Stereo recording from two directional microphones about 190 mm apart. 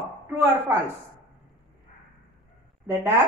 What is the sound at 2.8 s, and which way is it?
Speech, 10° right (ahead or behind).